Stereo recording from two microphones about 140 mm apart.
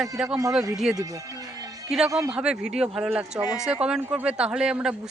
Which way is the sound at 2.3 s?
5° right (ahead or behind).